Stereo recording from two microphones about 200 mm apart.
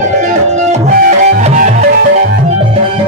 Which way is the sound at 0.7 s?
40° right (ahead or behind).